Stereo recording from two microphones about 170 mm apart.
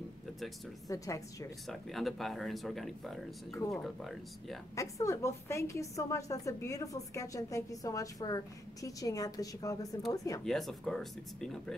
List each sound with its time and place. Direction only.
0.8 s a woman's voice: 20° left (ahead or behind)
1.7 s speech: centre (ahead or behind)
4.7 s a woman's voice: 15° left (ahead or behind)
10.4 s speech: centre (ahead or behind)